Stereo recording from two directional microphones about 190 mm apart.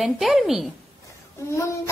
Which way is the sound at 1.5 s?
15° left (ahead or behind).